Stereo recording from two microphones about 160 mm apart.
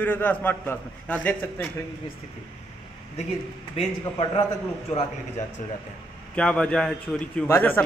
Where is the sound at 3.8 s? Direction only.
40° left (ahead or behind).